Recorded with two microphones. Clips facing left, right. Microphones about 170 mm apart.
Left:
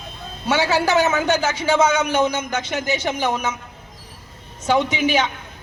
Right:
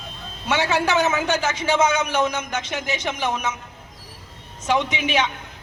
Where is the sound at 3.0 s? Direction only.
30° left (ahead or behind).